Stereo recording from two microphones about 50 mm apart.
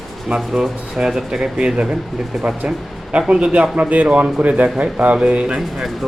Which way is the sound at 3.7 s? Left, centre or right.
Right.